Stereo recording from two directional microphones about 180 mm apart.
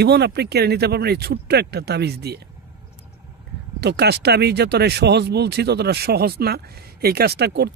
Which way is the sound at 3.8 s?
65° right (ahead or behind).